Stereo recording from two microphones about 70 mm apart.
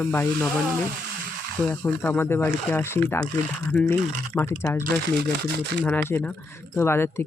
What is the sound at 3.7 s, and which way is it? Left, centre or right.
Speech, centre.